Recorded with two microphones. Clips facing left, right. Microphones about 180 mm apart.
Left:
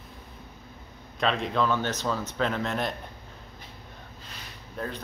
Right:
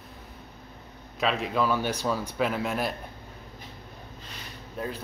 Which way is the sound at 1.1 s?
5° right (ahead or behind).